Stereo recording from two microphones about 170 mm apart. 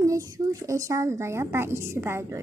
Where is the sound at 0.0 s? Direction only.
20° right (ahead or behind).